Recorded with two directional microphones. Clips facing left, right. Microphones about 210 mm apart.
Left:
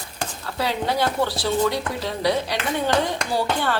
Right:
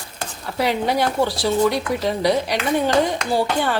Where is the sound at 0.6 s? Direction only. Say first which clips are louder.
Right 3 dB; 15° right (ahead or behind).